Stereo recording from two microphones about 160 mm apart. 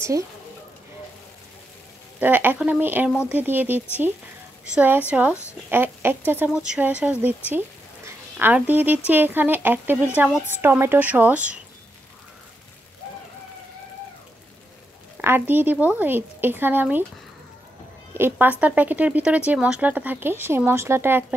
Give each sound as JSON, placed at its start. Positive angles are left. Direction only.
{"t": 2.1, "sound": "speech", "side_deg": -10}
{"t": 5.3, "sound": "speech", "side_deg": 15}
{"t": 5.7, "sound": "speech", "side_deg": -15}
{"t": 15.1, "sound": "speech", "side_deg": -10}
{"t": 18.1, "sound": "speech", "side_deg": -15}